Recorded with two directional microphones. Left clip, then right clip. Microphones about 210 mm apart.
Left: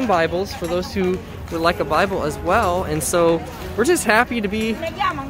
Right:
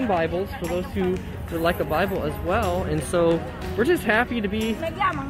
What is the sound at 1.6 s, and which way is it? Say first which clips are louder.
Speech: left 5 dB; 10° left (ahead or behind).